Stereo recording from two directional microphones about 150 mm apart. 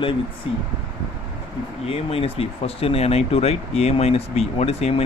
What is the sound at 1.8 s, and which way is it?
Speech, 40° left (ahead or behind).